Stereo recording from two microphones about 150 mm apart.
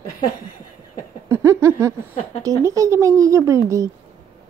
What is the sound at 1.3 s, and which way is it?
Speech, 20° right (ahead or behind).